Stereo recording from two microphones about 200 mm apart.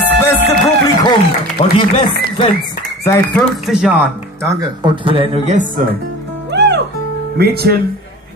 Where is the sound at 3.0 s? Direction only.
10° left (ahead or behind).